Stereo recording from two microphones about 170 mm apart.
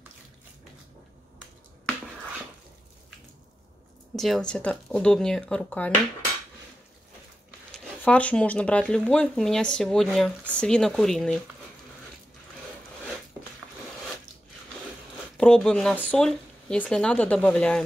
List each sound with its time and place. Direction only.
4.1 s speech: centre (ahead or behind)
7.7 s speech: 5° left (ahead or behind)
15.3 s speech: 5° left (ahead or behind)